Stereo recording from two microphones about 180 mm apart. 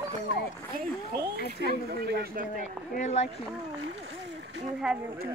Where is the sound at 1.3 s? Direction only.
60° left (ahead or behind).